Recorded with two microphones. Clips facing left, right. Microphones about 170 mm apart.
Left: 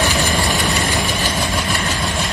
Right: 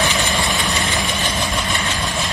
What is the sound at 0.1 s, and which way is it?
Vehicle, 35° left (ahead or behind).